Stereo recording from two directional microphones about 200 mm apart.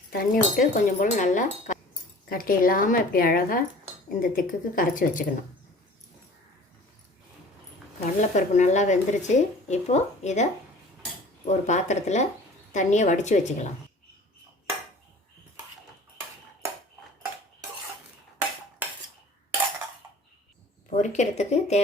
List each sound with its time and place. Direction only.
0.1 s speech: 45° left (ahead or behind)
8.0 s speech: 35° left (ahead or behind)
11.4 s speech: 35° left (ahead or behind)
20.9 s speech: 35° left (ahead or behind)